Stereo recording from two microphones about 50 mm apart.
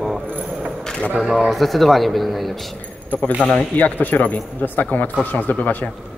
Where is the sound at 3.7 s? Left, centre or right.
Left.